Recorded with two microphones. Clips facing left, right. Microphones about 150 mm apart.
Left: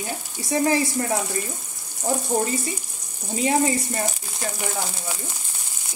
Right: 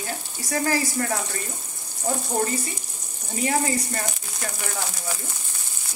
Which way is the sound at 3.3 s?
20° left (ahead or behind).